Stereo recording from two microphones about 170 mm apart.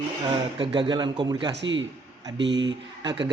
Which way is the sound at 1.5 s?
90° right.